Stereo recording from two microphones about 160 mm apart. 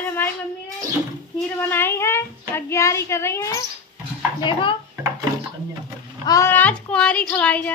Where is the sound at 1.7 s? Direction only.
15° left (ahead or behind).